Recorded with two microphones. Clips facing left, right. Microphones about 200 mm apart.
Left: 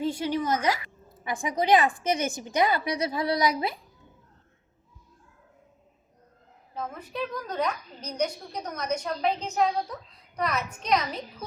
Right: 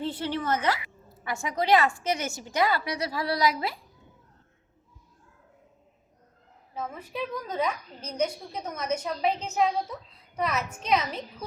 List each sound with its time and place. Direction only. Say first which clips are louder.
0.0 s a woman's voice: left 3 dB; 10° left (ahead or behind)
6.7 s a woman's voice: even; 5° right (ahead or behind)